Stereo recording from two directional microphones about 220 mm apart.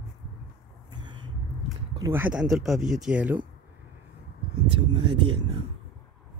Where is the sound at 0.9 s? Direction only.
20° right (ahead or behind).